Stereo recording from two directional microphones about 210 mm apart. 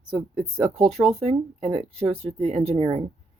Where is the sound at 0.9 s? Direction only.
Centre (ahead or behind).